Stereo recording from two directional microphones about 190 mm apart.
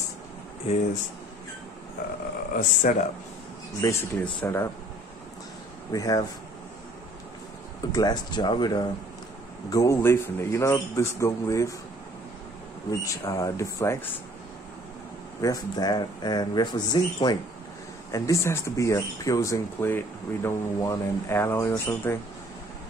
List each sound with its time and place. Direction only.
2.5 s speech: 40° left (ahead or behind)
3.8 s speech: 10° left (ahead or behind)
5.9 s speech: 20° left (ahead or behind)
7.9 s speech: 20° left (ahead or behind)
13.0 s speech: 15° left (ahead or behind)
15.4 s speech: 20° left (ahead or behind)